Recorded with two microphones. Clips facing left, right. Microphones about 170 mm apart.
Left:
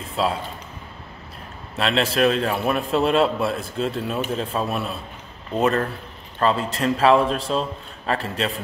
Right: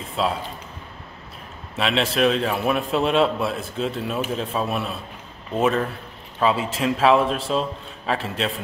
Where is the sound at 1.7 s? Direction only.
Centre (ahead or behind).